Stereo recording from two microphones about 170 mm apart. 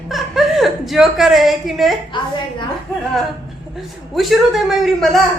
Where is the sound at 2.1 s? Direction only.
30° left (ahead or behind).